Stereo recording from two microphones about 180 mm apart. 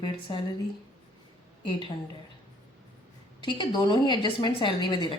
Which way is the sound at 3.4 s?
25° left (ahead or behind).